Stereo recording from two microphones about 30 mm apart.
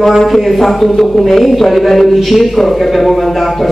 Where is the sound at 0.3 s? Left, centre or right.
Centre.